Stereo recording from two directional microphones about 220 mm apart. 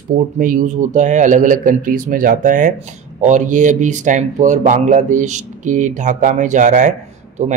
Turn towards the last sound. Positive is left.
turn(degrees=-30)  # may be behind; listen again after turning